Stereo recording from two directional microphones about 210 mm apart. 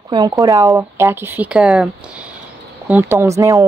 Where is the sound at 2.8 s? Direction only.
10° right (ahead or behind).